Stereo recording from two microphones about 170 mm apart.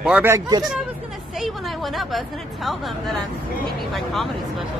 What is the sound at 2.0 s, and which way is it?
Speech, centre (ahead or behind).